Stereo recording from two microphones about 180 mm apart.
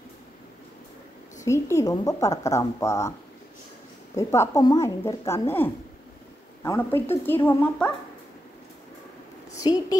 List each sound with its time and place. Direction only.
1.4 s a woman's voice: 15° left (ahead or behind)
4.2 s a woman's voice: 15° left (ahead or behind)
9.5 s a woman's voice: 20° left (ahead or behind)